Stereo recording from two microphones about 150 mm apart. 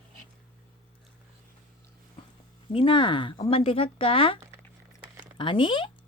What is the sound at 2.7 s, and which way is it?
Speech, 35° left (ahead or behind).